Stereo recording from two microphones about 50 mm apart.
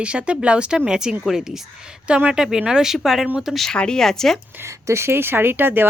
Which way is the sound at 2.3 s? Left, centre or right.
Centre.